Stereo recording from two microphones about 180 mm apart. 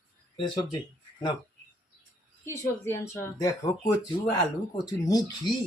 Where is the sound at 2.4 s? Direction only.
15° left (ahead or behind).